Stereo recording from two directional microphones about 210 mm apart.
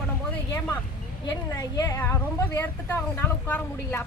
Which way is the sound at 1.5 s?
15° left (ahead or behind).